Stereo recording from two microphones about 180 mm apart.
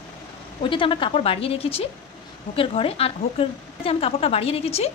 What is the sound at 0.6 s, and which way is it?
A woman's voice, 30° left (ahead or behind).